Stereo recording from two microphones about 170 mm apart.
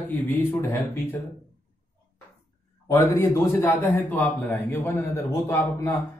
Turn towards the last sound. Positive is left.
turn(degrees=15)  # may be behind; listen again after turning